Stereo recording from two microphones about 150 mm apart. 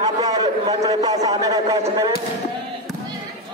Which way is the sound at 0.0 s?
25° right (ahead or behind).